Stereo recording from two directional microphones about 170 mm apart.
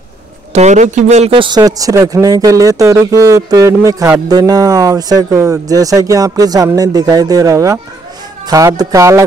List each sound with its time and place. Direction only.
0.5 s a man's voice: 40° right (ahead or behind); by 9.2 s 20° right (ahead or behind)